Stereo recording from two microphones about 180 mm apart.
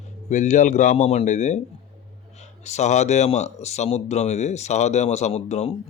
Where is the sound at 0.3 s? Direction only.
40° left (ahead or behind).